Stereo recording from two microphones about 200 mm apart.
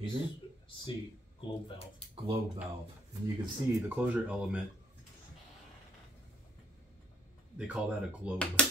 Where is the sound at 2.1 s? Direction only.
25° right (ahead or behind).